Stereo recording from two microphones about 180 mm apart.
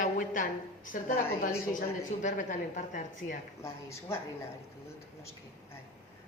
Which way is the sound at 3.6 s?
15° left (ahead or behind).